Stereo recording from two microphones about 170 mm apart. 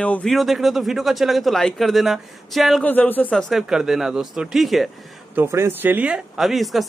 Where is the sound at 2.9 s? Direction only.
10° left (ahead or behind).